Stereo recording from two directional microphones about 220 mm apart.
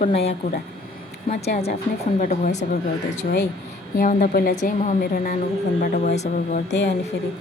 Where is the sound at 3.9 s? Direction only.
40° left (ahead or behind).